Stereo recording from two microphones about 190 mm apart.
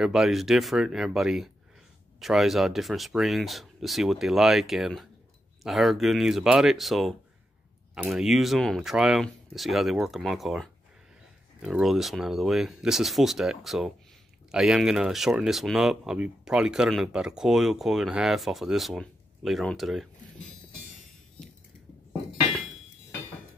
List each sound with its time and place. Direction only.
0.0 s speech: centre (ahead or behind)